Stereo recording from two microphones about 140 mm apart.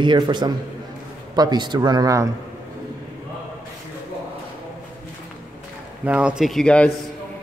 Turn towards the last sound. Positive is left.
turn(degrees=10)  # may be behind; listen again after turning